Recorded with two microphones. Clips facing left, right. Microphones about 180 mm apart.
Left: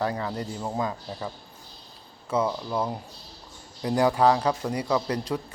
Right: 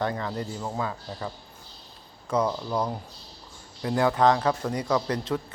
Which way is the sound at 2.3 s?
5° left (ahead or behind).